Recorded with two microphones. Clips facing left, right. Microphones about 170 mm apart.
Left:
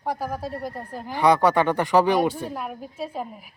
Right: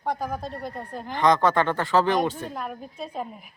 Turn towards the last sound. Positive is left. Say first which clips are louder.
# left 2 dB
turn(degrees=5)  # may be behind; listen again after turning